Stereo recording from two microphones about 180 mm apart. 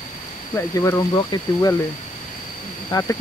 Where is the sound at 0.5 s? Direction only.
15° left (ahead or behind).